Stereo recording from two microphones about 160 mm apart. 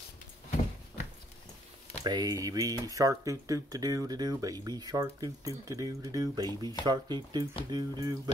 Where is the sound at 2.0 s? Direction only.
25° right (ahead or behind).